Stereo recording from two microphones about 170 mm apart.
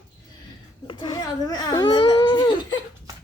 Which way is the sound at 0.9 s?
25° left (ahead or behind).